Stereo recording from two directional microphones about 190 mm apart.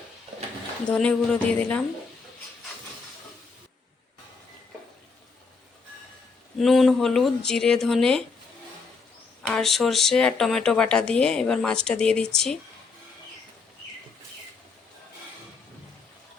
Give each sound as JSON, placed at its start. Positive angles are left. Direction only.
{"t": 0.9, "sound": "speech", "side_deg": 5}
{"t": 6.6, "sound": "speech", "side_deg": 0}
{"t": 9.5, "sound": "speech", "side_deg": 0}